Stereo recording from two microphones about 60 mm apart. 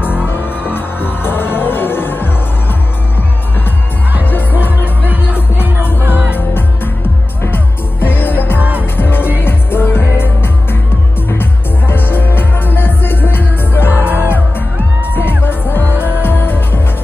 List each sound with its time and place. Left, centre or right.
0.3 s music: left
4.3 s music: left
5.9 s music: right
6.3 s music: left
8.5 s music: right
8.9 s music: left
11.9 s music: left